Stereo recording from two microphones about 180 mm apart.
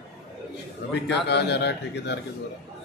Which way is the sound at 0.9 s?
70° left (ahead or behind).